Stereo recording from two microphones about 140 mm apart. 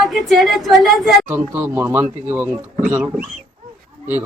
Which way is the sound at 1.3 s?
15° right (ahead or behind).